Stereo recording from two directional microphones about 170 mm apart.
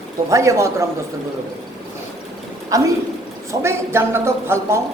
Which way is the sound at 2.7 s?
20° right (ahead or behind).